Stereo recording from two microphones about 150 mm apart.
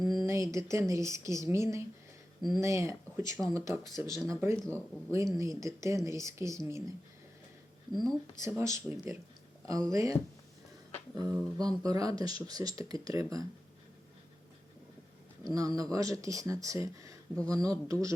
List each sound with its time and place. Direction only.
0.3 s speech: 20° right (ahead or behind)
4.6 s speech: 10° left (ahead or behind)
5.1 s speech: 20° right (ahead or behind)
8.4 s speech: 20° right (ahead or behind)
11.2 s speech: 25° right (ahead or behind)
15.4 s speech: 25° right (ahead or behind)